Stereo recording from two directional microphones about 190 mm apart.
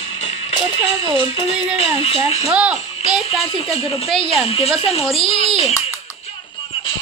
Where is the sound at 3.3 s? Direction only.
30° left (ahead or behind).